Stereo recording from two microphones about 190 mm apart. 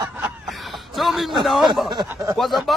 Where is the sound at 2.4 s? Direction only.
Centre (ahead or behind).